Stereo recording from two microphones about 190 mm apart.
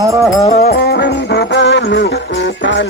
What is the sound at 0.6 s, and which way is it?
Music, 55° left (ahead or behind).